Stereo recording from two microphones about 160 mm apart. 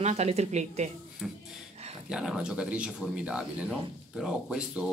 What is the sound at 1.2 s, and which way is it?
Speech, 5° left (ahead or behind).